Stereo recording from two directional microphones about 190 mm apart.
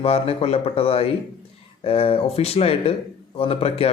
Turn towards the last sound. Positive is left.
turn(degrees=30)  # may be behind; listen again after turning